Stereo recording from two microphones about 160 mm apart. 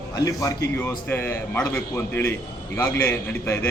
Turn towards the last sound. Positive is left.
turn(degrees=15)  # may be behind; listen again after turning